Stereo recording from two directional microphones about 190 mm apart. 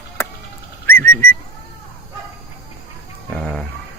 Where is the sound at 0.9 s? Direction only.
10° left (ahead or behind).